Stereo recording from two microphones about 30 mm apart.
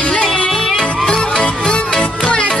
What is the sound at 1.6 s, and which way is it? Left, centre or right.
Music, left.